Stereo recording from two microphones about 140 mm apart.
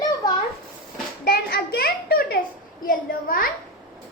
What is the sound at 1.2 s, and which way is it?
A child's voice, 90° left.